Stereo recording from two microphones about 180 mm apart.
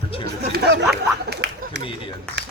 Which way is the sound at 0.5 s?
60° right (ahead or behind).